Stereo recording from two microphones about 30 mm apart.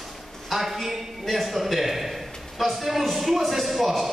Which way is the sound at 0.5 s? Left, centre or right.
Centre.